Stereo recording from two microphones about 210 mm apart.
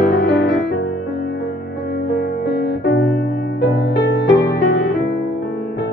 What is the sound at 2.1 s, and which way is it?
Music, 50° left (ahead or behind).